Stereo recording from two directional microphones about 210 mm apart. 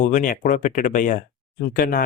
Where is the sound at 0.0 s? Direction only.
40° left (ahead or behind).